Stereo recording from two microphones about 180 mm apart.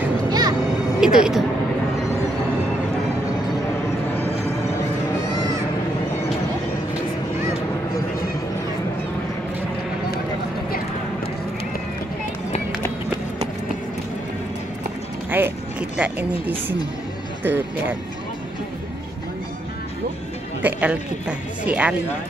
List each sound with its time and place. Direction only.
0.3 s music: 20° right (ahead or behind)
1.0 s speech: 5° right (ahead or behind)
15.3 s a sound: 10° right (ahead or behind)
17.4 s speech: 10° right (ahead or behind)
20.6 s speech: 10° right (ahead or behind)